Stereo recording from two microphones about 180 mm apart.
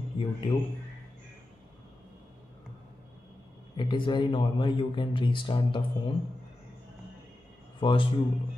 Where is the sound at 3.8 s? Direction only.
25° left (ahead or behind).